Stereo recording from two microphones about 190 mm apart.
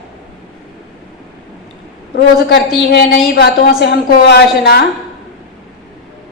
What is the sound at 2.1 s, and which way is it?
A woman's voice, 60° left (ahead or behind).